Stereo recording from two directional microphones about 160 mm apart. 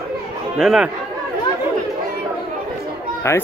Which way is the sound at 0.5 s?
5° right (ahead or behind).